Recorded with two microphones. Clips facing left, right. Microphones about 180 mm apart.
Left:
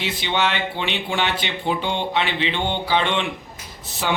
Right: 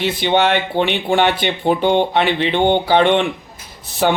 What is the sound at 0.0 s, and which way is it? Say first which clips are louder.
A man's voice: right 7 dB; 55° right (ahead or behind).